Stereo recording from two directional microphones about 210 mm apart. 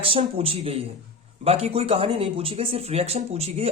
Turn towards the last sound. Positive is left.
turn(degrees=-30)  # may be behind; listen again after turning